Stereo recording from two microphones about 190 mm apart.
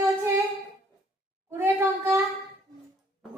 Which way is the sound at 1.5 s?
15° right (ahead or behind).